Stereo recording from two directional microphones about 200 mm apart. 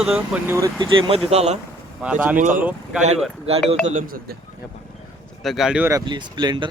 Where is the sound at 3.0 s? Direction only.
30° right (ahead or behind).